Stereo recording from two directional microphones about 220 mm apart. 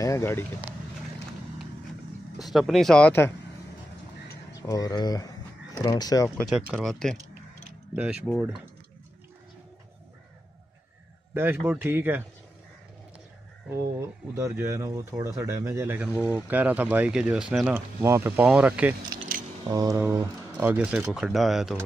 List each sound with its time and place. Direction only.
0.0 s speech: 10° left (ahead or behind)
2.3 s speech: centre (ahead or behind)
4.6 s speech: 15° left (ahead or behind)
6.3 s speech: centre (ahead or behind)
11.3 s speech: 10° right (ahead or behind)
14.3 s speech: 15° right (ahead or behind)